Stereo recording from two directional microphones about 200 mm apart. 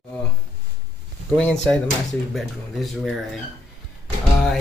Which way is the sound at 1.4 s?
5° left (ahead or behind).